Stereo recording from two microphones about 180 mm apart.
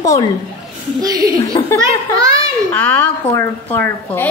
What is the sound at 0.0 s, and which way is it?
Speech, 20° left (ahead or behind).